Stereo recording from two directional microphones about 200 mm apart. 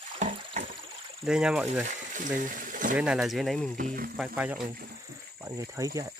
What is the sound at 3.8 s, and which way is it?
Speech, 45° right (ahead or behind).